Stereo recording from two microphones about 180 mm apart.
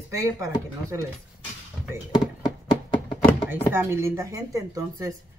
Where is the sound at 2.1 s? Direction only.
25° left (ahead or behind).